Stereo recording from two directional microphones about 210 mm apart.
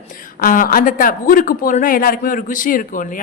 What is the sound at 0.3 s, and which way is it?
Speech, 40° left (ahead or behind).